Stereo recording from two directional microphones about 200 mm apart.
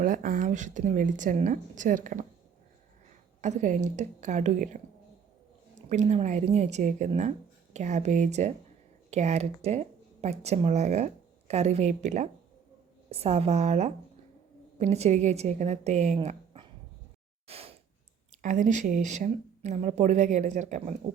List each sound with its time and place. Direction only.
0.0 s speech: 45° right (ahead or behind)
3.4 s speech: 40° right (ahead or behind)
5.9 s speech: 35° right (ahead or behind)
16.2 s a sound: 30° right (ahead or behind)
18.4 s speech: 40° right (ahead or behind)